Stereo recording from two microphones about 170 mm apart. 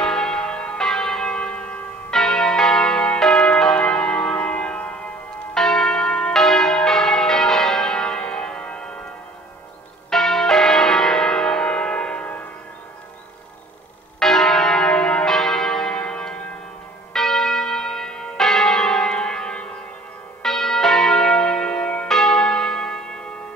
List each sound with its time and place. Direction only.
0.0 s church bell: 5° left (ahead or behind)
10.0 s church bell: 5° left (ahead or behind)
14.2 s church bell: centre (ahead or behind)